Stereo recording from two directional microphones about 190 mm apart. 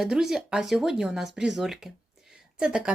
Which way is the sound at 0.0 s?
Centre (ahead or behind).